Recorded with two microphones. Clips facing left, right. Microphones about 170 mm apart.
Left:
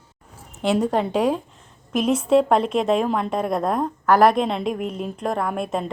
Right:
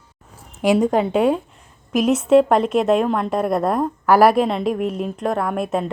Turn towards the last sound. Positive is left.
turn(degrees=0)  # may be behind; listen again after turning